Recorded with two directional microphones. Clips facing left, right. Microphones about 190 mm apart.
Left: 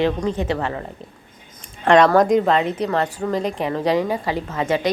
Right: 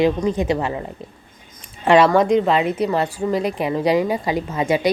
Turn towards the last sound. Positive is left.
turn(degrees=-10)  # may be behind; listen again after turning